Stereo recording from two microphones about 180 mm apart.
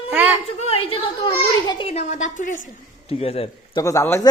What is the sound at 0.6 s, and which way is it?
A child's voice, 30° left (ahead or behind).